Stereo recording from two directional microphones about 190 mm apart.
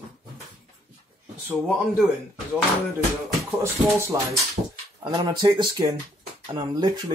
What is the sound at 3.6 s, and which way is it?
Speech, 15° right (ahead or behind).